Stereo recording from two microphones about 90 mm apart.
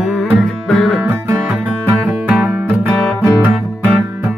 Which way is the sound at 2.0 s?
10° right (ahead or behind).